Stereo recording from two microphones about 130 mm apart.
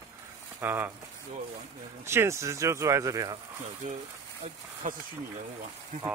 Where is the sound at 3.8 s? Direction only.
85° right.